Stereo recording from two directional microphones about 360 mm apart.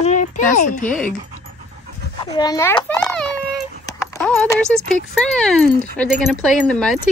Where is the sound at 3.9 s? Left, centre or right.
Centre.